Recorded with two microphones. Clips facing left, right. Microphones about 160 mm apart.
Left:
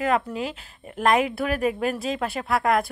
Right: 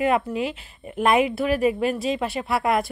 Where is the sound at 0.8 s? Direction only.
5° right (ahead or behind).